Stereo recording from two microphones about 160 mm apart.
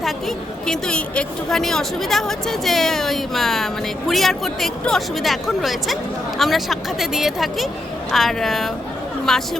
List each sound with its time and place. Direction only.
0.0 s a woman's voice: centre (ahead or behind)